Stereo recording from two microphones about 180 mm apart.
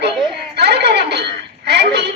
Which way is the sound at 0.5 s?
70° right (ahead or behind).